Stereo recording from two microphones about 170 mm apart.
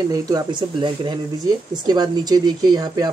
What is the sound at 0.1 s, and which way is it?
Speech, 25° right (ahead or behind).